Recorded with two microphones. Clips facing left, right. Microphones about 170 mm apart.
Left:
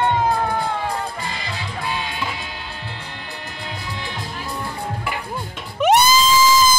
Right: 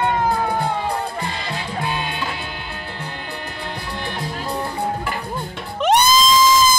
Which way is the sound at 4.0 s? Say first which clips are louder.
Right 4 dB; 60° right (ahead or behind).